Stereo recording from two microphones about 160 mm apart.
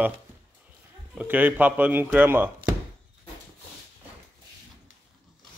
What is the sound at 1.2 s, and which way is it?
A man's voice, 10° right (ahead or behind).